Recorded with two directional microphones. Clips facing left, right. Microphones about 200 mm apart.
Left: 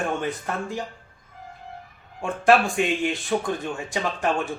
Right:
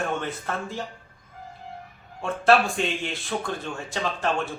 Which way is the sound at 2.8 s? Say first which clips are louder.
Left 5 dB; 10° left (ahead or behind).